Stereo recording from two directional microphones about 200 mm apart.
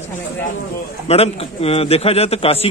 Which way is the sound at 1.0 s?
30° left (ahead or behind).